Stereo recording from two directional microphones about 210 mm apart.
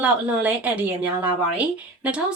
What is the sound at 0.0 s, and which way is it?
Speech, 5° right (ahead or behind).